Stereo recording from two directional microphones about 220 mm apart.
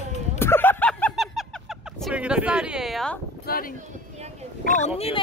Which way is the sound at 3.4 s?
40° left (ahead or behind).